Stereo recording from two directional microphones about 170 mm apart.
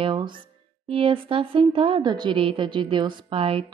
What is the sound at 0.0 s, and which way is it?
Speech, 30° right (ahead or behind).